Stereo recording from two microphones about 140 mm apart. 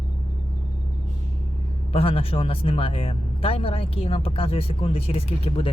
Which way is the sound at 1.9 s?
45° left (ahead or behind).